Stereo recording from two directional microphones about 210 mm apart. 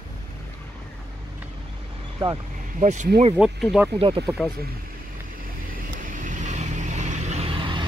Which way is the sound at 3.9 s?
25° right (ahead or behind).